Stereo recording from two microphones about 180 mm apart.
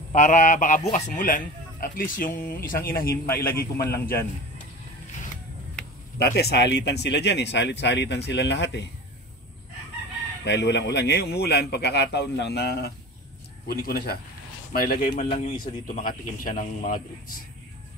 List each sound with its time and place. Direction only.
0.1 s a man's voice: 45° left (ahead or behind)
6.1 s speech: 60° left (ahead or behind)
10.4 s a man's voice: 75° left (ahead or behind); by 17.0 s 50° left (ahead or behind)